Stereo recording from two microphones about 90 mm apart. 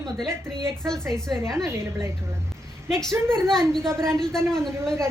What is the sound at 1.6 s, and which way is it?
Speech, 35° right (ahead or behind).